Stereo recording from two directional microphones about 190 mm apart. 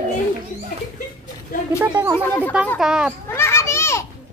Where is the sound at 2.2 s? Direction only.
10° left (ahead or behind).